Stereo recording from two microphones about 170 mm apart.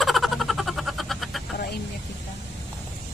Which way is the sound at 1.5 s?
65° left (ahead or behind).